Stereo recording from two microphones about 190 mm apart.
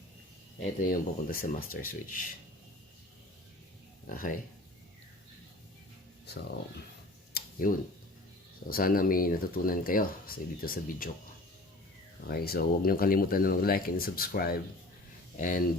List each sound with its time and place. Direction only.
0.6 s speech: 50° left (ahead or behind)
4.0 s speech: 45° left (ahead or behind)
7.3 s tick-tock: 55° left (ahead or behind)
8.7 s speech: 50° left (ahead or behind)
12.3 s speech: 55° left (ahead or behind)